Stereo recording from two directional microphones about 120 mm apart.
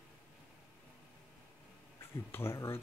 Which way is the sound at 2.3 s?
20° left (ahead or behind).